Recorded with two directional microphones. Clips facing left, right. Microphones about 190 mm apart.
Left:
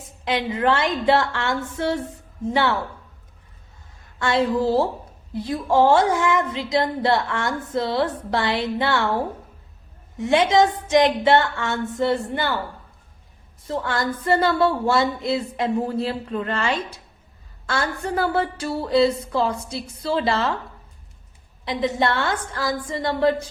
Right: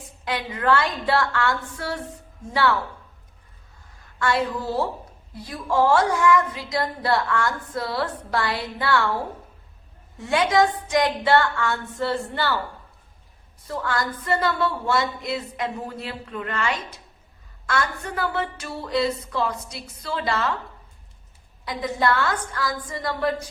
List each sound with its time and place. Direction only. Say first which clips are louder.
0.3 s a woman's voice: left 2 dB; 20° left (ahead or behind)
4.2 s a woman's voice: left 4 dB; 25° left (ahead or behind)
10.2 s a woman's voice: left 3 dB; 20° left (ahead or behind)
13.7 s a woman's voice: left 2 dB; 25° left (ahead or behind)
21.6 s a woman's voice: left 3 dB; 25° left (ahead or behind)